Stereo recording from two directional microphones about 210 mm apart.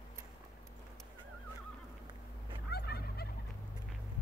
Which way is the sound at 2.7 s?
50° left (ahead or behind).